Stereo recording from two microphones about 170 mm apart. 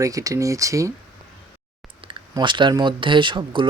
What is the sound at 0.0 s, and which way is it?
Speech, 20° right (ahead or behind).